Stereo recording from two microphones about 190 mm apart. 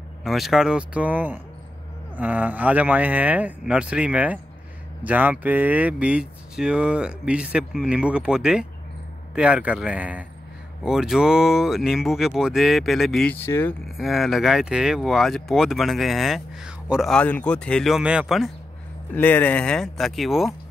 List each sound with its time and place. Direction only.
0.2 s speech: centre (ahead or behind)
13.9 s speech: centre (ahead or behind)
19.1 s speech: 10° left (ahead or behind)